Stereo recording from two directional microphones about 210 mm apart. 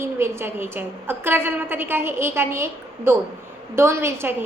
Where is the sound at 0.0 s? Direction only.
10° right (ahead or behind).